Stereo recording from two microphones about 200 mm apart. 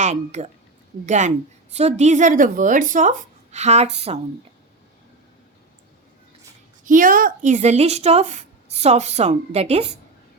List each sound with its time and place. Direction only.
0.0 s a woman's voice: 35° right (ahead or behind)
6.8 s a woman's voice: 45° right (ahead or behind)